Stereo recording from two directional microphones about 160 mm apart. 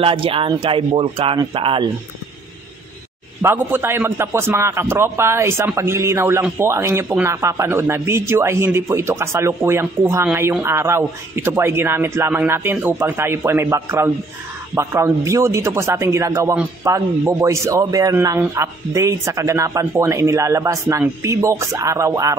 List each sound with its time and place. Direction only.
0.0 s speech: 35° right (ahead or behind)
3.4 s a man's voice: 15° right (ahead or behind)